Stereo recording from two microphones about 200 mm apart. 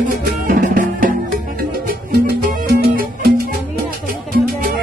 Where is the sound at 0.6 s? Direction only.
40° right (ahead or behind).